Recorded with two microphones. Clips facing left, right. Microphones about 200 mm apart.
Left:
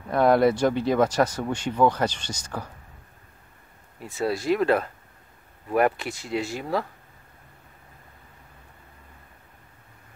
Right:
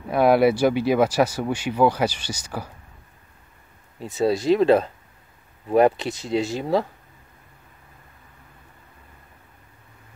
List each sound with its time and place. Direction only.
0.1 s speech: 10° right (ahead or behind)
4.0 s speech: 20° right (ahead or behind)